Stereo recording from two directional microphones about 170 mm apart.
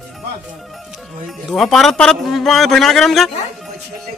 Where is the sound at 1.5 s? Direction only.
Centre (ahead or behind).